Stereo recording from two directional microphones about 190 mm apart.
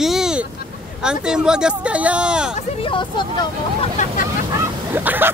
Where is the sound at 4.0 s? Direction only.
40° left (ahead or behind).